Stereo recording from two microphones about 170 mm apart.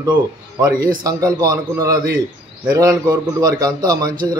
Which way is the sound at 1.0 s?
20° right (ahead or behind).